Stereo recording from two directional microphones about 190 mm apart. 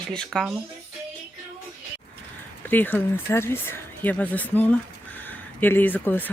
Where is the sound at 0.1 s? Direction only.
5° left (ahead or behind).